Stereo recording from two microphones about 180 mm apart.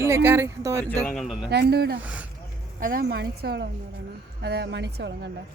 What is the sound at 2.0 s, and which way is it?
Speech, 10° right (ahead or behind).